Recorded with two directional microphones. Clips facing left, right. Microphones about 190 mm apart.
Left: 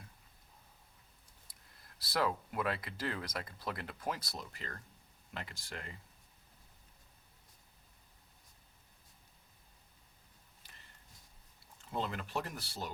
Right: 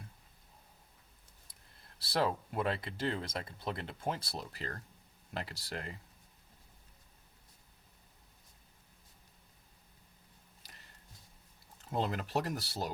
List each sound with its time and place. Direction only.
2.0 s speech: 30° right (ahead or behind)
11.9 s speech: 40° right (ahead or behind)